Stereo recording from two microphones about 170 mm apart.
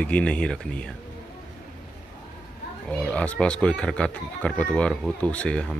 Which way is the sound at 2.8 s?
5° left (ahead or behind).